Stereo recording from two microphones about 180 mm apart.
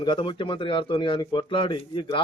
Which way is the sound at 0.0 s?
25° left (ahead or behind).